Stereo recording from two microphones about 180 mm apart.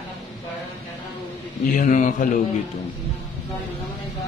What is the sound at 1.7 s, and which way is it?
Speech, 45° left (ahead or behind).